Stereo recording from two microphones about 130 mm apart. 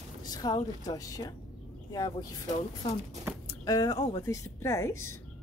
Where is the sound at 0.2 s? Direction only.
30° left (ahead or behind).